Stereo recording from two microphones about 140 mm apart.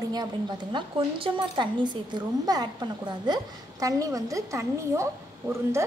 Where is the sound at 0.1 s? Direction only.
30° right (ahead or behind).